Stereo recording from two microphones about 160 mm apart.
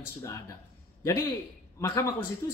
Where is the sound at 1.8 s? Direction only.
20° left (ahead or behind).